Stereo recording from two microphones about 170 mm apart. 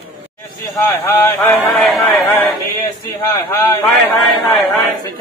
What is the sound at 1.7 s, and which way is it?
Speech, centre (ahead or behind).